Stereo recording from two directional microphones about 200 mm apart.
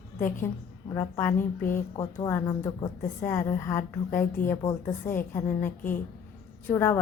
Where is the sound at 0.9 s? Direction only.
10° left (ahead or behind).